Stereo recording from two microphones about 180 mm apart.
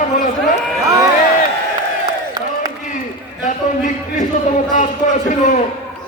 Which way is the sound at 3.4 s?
45° left (ahead or behind).